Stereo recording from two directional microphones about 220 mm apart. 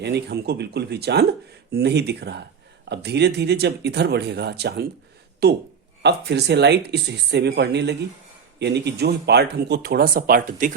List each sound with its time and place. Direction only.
0.0 s speech: 50° right (ahead or behind)